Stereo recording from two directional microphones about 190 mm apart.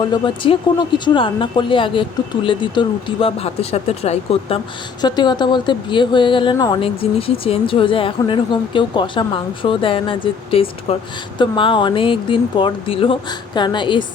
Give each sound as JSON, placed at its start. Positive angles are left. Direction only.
{"t": 0.0, "sound": "speech", "side_deg": 25}